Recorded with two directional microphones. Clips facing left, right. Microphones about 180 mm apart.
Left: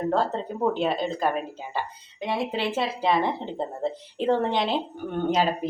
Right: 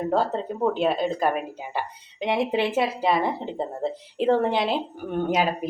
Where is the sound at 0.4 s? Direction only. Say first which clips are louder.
Right 2 dB; centre (ahead or behind); by 2.8 s 20° right (ahead or behind).